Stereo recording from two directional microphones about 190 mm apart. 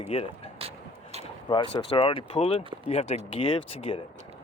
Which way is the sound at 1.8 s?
25° left (ahead or behind).